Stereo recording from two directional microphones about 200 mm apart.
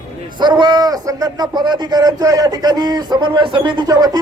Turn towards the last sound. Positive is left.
turn(degrees=-20)  # may be behind; listen again after turning